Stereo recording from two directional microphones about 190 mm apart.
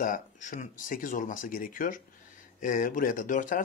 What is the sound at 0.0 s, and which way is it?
A man's voice, 45° left (ahead or behind).